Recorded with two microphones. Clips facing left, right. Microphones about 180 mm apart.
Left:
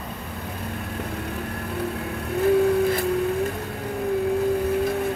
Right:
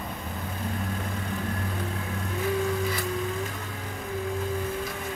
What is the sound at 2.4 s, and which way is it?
Music, 60° left (ahead or behind).